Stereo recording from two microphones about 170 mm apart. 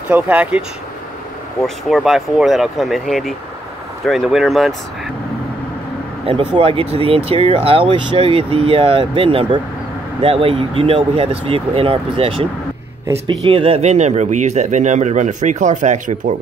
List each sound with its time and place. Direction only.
0.1 s speech: 10° right (ahead or behind)
6.2 s speech: 30° right (ahead or behind)
13.0 s speech: 15° right (ahead or behind)
13.4 s speech: 35° right (ahead or behind)